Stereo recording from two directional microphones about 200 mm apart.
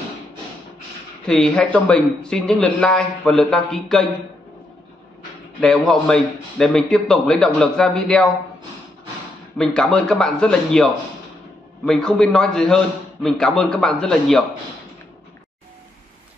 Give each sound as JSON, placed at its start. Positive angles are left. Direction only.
{"t": 1.2, "sound": "a man's voice", "side_deg": 5}
{"t": 5.6, "sound": "a man's voice", "side_deg": 5}
{"t": 9.6, "sound": "a man's voice", "side_deg": 0}